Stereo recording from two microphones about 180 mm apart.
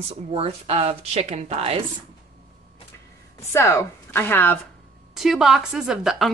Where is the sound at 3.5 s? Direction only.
15° left (ahead or behind).